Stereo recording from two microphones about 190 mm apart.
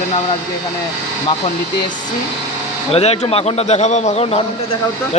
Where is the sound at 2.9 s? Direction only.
30° left (ahead or behind).